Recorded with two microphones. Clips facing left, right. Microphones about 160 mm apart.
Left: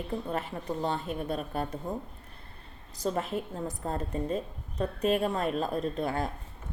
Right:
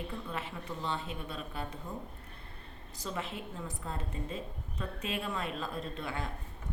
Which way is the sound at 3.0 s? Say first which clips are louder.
Left 8 dB; 45° left (ahead or behind).